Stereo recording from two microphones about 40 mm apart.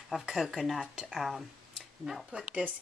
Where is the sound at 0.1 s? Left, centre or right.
Centre.